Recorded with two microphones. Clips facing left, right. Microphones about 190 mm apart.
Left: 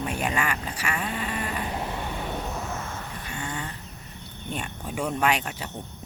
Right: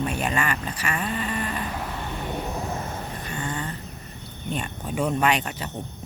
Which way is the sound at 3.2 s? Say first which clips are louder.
Right 3 dB; 10° left (ahead or behind).